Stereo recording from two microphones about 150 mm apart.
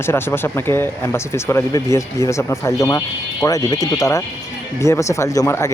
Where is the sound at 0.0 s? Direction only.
15° left (ahead or behind).